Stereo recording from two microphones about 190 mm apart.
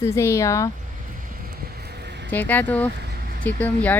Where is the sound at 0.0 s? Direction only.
15° left (ahead or behind).